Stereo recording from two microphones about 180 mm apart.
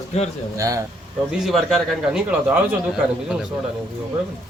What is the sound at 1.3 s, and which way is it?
A man's voice, centre (ahead or behind).